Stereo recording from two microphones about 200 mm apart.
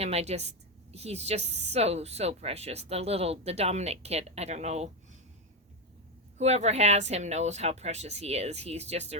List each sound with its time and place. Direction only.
0.0 s a woman's voice: 30° right (ahead or behind)
6.3 s speech: 35° right (ahead or behind)